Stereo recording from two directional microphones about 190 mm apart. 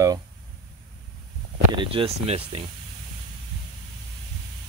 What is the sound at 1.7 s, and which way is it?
Speech, 25° right (ahead or behind).